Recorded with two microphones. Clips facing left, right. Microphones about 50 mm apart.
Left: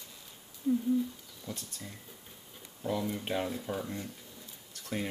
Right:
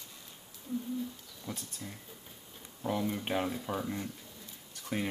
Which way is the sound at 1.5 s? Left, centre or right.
Centre.